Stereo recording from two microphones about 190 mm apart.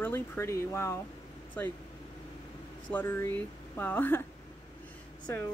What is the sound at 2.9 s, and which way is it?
Speech, 10° left (ahead or behind).